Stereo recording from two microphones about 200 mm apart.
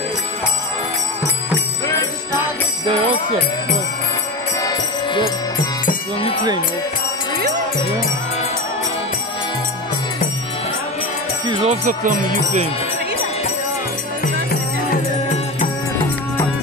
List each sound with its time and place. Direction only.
4.6 s music: 20° left (ahead or behind)
11.4 s speech: 30° right (ahead or behind)
14.2 s music: 45° left (ahead or behind)